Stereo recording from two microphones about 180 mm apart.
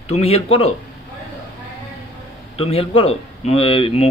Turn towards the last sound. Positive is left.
turn(degrees=30)  # may be behind; listen again after turning